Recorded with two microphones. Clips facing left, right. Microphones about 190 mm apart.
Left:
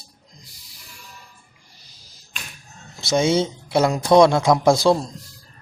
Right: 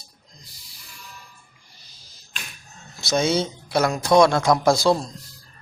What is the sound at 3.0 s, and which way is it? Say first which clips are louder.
A man's voice: left 3 dB; 25° left (ahead or behind).